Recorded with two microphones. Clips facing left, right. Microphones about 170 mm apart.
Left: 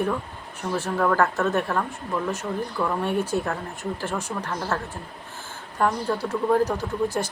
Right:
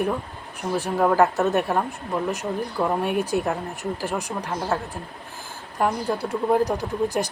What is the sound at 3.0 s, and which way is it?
Speech, 15° right (ahead or behind).